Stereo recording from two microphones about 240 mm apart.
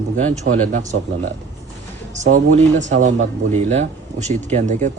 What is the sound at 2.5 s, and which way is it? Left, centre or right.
A man's voice, right.